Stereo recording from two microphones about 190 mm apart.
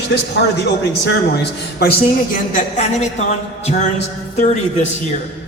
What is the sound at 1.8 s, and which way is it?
A woman's voice, 50° left (ahead or behind).